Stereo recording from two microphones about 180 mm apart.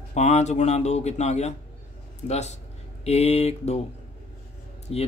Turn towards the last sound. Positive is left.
turn(degrees=35)  # may be behind; listen again after turning